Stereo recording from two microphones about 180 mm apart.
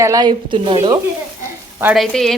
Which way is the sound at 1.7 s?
5° right (ahead or behind).